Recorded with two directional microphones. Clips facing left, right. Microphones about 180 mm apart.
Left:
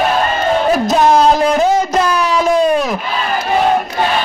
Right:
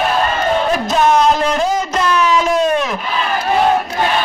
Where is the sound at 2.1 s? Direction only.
35° left (ahead or behind).